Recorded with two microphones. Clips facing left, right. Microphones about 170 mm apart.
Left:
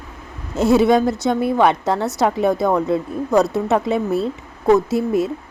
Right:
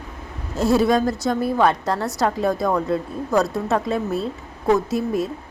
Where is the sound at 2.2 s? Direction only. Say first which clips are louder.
Left 3 dB; 20° left (ahead or behind).